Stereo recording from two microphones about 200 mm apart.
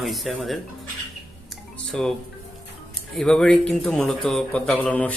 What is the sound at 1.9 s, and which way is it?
Speech, 5° left (ahead or behind).